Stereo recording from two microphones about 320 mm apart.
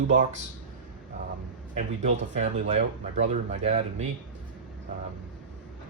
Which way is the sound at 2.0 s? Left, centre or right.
Right.